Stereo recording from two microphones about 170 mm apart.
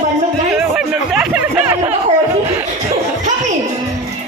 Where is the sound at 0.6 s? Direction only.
5° right (ahead or behind).